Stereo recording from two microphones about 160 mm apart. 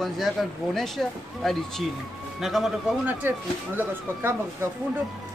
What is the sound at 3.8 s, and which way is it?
Speech, 15° right (ahead or behind).